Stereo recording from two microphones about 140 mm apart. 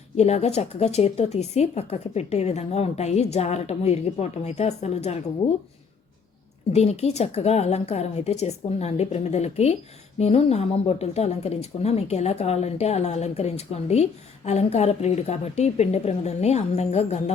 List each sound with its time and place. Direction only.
0.2 s a woman's voice: 50° left (ahead or behind)
6.7 s a woman's voice: 50° left (ahead or behind)